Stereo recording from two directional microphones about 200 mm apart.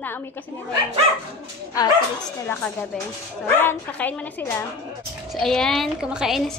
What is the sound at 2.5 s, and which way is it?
A woman's voice, 10° left (ahead or behind).